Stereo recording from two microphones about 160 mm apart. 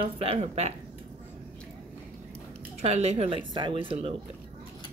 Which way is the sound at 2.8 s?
45° right (ahead or behind).